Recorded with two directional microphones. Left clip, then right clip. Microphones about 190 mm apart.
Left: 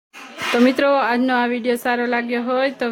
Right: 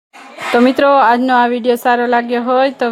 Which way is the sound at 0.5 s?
10° right (ahead or behind).